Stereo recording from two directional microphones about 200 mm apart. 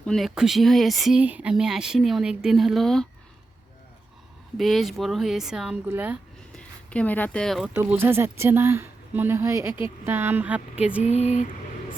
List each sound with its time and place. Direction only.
0.0 s speech: centre (ahead or behind)
4.5 s speech: centre (ahead or behind)
6.5 s speech: 5° left (ahead or behind)
7.8 s speech: 10° right (ahead or behind)
11.0 s a sound: 35° left (ahead or behind)